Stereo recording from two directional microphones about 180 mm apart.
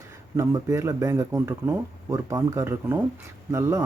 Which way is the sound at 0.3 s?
15° right (ahead or behind).